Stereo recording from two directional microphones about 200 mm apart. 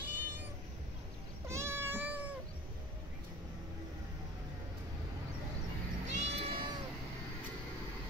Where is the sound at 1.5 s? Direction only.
15° right (ahead or behind).